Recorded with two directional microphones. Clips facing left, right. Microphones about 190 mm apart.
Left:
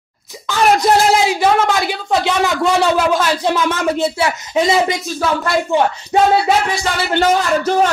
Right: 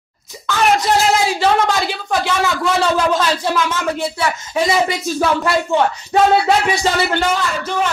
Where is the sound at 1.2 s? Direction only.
15° left (ahead or behind).